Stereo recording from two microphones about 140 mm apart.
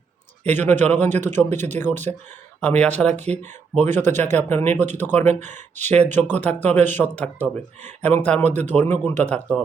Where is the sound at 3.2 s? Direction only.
55° right (ahead or behind).